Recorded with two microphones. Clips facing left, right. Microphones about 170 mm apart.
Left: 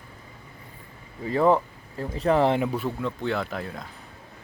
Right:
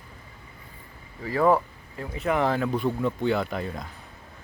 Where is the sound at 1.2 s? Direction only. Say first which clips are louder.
Left 1 dB; 20° left (ahead or behind).